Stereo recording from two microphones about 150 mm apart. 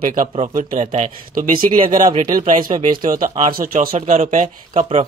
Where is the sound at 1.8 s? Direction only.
60° right (ahead or behind).